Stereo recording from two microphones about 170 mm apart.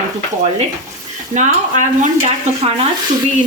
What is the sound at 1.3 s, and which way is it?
Stir, 45° right (ahead or behind).